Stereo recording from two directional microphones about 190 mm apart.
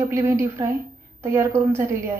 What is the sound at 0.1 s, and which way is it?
A woman's voice, 15° right (ahead or behind).